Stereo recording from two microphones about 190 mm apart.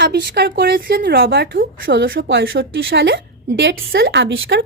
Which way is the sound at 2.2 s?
75° right (ahead or behind).